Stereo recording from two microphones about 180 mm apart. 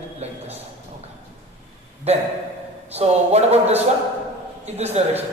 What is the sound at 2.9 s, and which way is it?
A man's voice, 35° right (ahead or behind).